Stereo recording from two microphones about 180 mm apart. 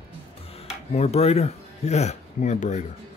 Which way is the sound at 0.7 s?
35° left (ahead or behind).